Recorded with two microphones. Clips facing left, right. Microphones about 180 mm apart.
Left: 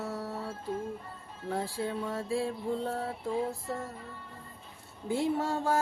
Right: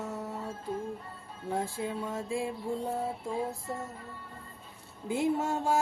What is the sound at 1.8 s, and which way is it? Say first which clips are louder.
Music: left 1 dB; 15° right (ahead or behind).